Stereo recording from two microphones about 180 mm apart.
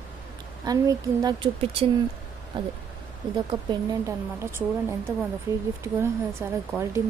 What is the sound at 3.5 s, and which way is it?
Speech, 25° right (ahead or behind).